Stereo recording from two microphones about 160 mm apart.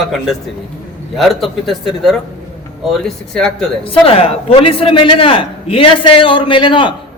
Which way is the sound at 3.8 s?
35° left (ahead or behind).